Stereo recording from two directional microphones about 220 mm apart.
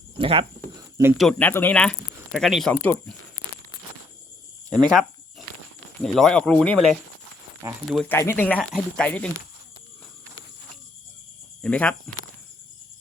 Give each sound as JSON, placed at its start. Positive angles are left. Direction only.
{"t": 0.2, "sound": "speech", "side_deg": -25}
{"t": 1.1, "sound": "speech", "side_deg": 0}
{"t": 4.7, "sound": "speech", "side_deg": 5}
{"t": 11.6, "sound": "speech", "side_deg": 5}